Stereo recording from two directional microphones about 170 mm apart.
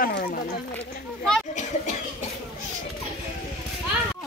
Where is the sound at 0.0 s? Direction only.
60° left (ahead or behind).